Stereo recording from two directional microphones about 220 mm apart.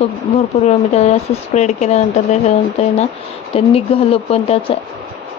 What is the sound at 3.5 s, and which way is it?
Speech, 25° left (ahead or behind).